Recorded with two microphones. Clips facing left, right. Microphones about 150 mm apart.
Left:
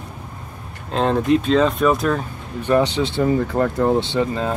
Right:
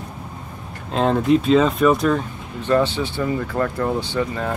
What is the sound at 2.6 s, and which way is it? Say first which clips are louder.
Speech: left 1 dB; 15° left (ahead or behind).